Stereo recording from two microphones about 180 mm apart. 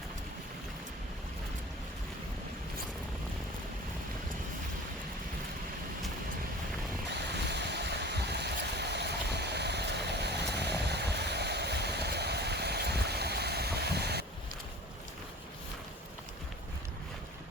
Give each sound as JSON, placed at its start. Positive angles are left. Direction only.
{"t": 7.1, "sound": "waves", "side_deg": -70}